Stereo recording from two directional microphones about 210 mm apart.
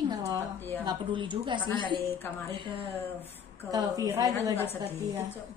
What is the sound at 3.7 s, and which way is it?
Speech, 15° right (ahead or behind).